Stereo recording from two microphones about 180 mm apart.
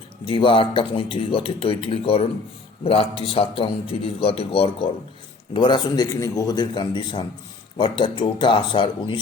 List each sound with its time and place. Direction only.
0.3 s a man's voice: 30° left (ahead or behind)